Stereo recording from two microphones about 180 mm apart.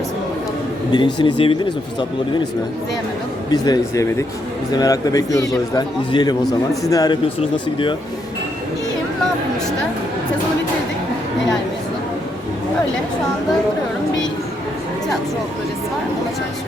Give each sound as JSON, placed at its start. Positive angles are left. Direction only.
{"t": 0.9, "sound": "speech", "side_deg": 25}
{"t": 3.5, "sound": "speech", "side_deg": 20}